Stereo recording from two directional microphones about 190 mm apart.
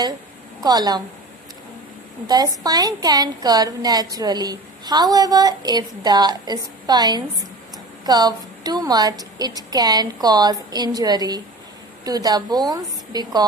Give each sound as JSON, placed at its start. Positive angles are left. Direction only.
{"t": 0.6, "sound": "a woman's voice", "side_deg": -20}
{"t": 2.2, "sound": "a woman's voice", "side_deg": -20}